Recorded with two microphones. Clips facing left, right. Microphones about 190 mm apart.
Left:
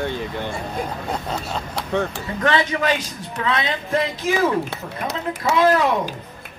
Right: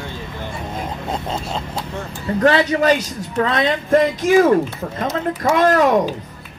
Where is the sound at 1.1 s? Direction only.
25° right (ahead or behind).